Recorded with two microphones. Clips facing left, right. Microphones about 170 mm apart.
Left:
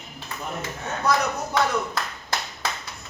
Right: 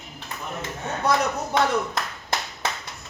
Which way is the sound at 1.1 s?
25° right (ahead or behind).